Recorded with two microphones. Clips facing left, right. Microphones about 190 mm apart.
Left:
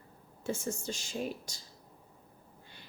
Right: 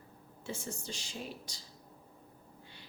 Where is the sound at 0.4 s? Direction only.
45° left (ahead or behind).